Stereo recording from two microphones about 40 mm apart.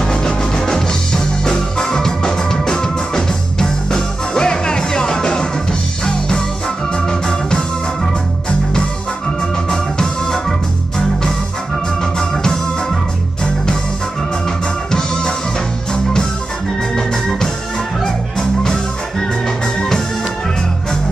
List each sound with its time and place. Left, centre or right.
0.0 s music: centre
7.1 s organ: centre
9.7 s music: centre
12.0 s music: centre
14.9 s music: centre